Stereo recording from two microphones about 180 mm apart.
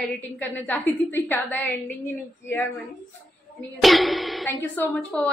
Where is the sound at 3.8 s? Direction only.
Centre (ahead or behind).